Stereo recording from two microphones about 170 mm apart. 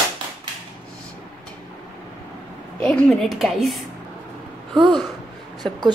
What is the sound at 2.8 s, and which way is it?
A woman's voice, 5° left (ahead or behind).